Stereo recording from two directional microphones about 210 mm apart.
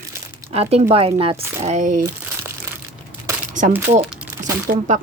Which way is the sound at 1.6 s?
35° right (ahead or behind).